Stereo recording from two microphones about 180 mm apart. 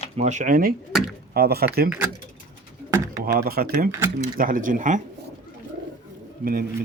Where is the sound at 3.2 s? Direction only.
60° right (ahead or behind).